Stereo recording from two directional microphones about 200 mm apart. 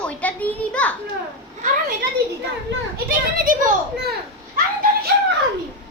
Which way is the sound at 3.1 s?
45° right (ahead or behind).